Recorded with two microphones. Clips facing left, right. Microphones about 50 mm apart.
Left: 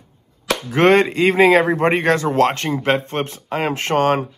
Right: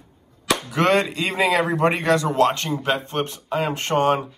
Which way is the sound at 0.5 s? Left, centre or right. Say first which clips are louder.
Left 5 dB; left.